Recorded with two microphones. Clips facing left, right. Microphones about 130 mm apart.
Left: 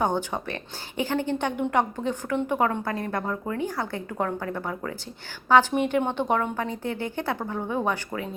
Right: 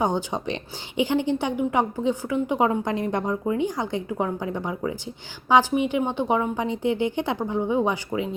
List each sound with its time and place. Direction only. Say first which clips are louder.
0.0 s speech: right 1 dB; 15° right (ahead or behind)